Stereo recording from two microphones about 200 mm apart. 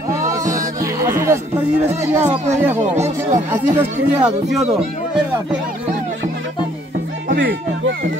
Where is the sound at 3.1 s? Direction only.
10° right (ahead or behind).